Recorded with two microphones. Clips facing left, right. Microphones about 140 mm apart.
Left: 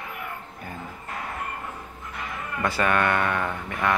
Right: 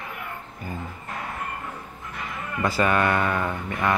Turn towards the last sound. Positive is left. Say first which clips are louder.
# right 1 dB
turn(degrees=-5)  # may be behind; listen again after turning